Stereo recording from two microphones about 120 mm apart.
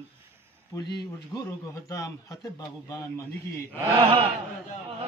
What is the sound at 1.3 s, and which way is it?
A man's voice, 30° left (ahead or behind).